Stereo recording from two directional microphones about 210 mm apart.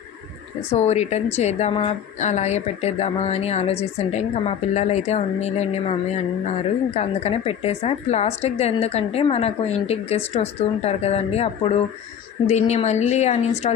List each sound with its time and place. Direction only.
0.7 s a woman's voice: 30° left (ahead or behind)